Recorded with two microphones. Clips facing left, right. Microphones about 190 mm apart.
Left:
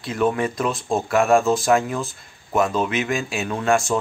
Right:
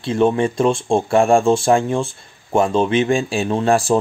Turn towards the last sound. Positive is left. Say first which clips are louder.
# right 4 dB
turn(degrees=-35)  # may be behind; listen again after turning